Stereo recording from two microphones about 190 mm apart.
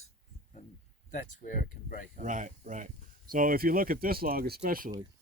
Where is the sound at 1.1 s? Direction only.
45° left (ahead or behind).